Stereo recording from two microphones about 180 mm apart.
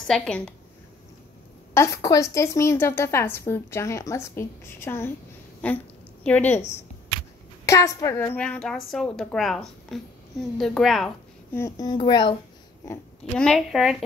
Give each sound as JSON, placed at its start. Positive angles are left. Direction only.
{"t": 0.0, "sound": "a woman's voice", "side_deg": 5}
{"t": 1.7, "sound": "a woman's voice", "side_deg": 15}
{"t": 7.6, "sound": "a woman's voice", "side_deg": 15}
{"t": 11.5, "sound": "speech", "side_deg": 20}
{"t": 13.4, "sound": "a woman's voice", "side_deg": 0}